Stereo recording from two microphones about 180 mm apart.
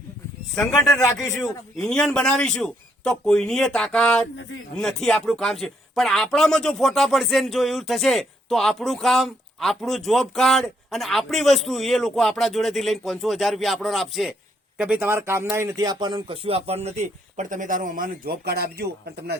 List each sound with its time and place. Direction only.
0.8 s a man's voice: 15° left (ahead or behind)
1.7 s a man's voice: 5° left (ahead or behind); by 16.9 s 35° right (ahead or behind)
17.3 s speech: 45° right (ahead or behind)